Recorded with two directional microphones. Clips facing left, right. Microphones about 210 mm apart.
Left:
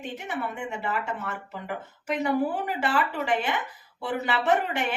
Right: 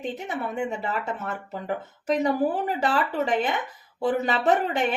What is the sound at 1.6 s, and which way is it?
Speech, 35° right (ahead or behind).